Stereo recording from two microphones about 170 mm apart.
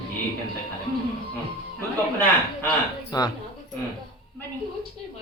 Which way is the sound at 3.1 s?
25° left (ahead or behind).